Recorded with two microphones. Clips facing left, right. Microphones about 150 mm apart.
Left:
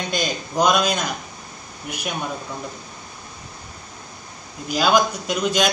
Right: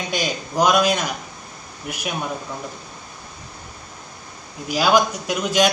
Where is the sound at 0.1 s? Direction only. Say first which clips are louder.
Right 2 dB; 5° right (ahead or behind).